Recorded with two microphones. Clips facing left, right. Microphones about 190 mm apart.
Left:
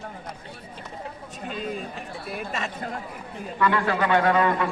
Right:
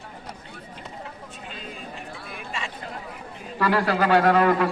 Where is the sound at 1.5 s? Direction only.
50° left (ahead or behind).